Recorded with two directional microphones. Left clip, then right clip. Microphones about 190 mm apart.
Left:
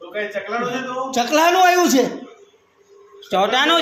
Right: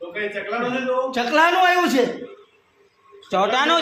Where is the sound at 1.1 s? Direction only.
30° left (ahead or behind).